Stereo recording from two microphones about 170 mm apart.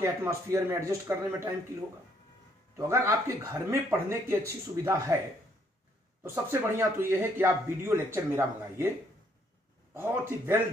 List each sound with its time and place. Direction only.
0.0 s speech: 15° right (ahead or behind)
2.9 s speech: 15° right (ahead or behind)
6.2 s speech: 15° right (ahead or behind)
9.9 s speech: 15° right (ahead or behind)